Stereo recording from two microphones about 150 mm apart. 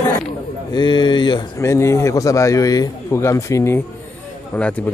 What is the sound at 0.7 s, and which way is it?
Speech, 35° left (ahead or behind).